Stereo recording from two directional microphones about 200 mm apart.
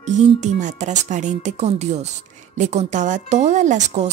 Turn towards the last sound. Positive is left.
turn(degrees=-35)  # may be behind; listen again after turning